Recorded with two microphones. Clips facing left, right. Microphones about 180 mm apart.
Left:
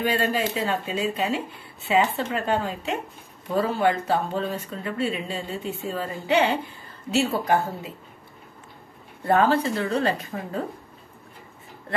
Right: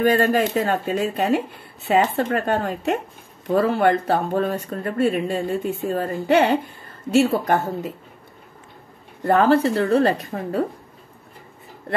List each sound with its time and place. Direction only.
0.0 s speech: 45° right (ahead or behind)
9.2 s speech: 50° right (ahead or behind)